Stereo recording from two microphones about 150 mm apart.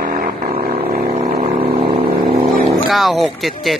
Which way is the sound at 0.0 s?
60° right (ahead or behind).